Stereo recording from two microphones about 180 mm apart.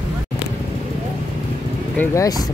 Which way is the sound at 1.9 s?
20° left (ahead or behind).